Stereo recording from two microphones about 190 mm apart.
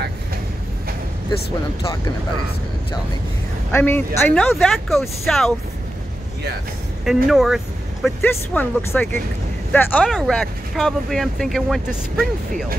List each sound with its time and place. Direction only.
3.7 s speech: 10° left (ahead or behind)
7.1 s speech: centre (ahead or behind)
8.2 s speech: 10° left (ahead or behind)